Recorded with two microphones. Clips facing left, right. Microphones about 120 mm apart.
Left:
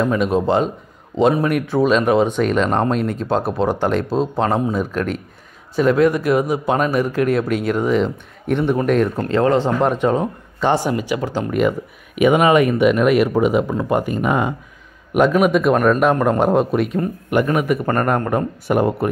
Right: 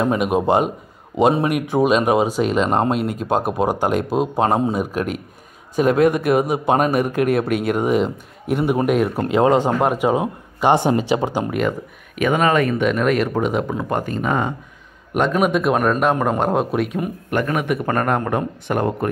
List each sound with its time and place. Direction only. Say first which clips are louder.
0.2 s a man's voice: even; 15° right (ahead or behind)
6.9 s speech: even; 55° right (ahead or behind)
7.7 s speech: left 1 dB; 15° right (ahead or behind)
12.2 s a man's voice: left 4 dB; 10° left (ahead or behind)